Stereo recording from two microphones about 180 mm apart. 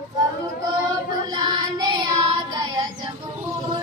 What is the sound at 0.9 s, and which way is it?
Child singing, 25° right (ahead or behind).